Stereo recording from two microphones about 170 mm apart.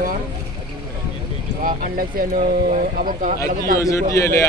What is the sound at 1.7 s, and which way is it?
Speech, 55° right (ahead or behind).